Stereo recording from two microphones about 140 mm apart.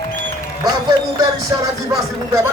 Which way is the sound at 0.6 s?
25° right (ahead or behind).